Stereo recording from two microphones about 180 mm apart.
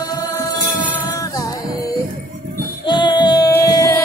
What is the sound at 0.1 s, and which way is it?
Music, 20° left (ahead or behind).